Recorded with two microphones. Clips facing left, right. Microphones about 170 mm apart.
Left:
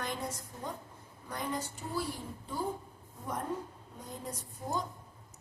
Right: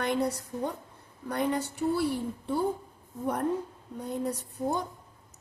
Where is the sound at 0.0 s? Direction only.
65° right (ahead or behind).